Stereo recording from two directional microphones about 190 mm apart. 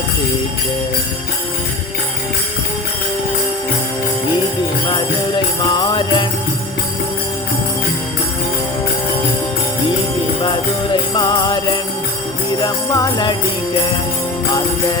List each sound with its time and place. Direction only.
5.7 s jingle bell: 25° left (ahead or behind)
11.1 s jingle bell: 20° left (ahead or behind)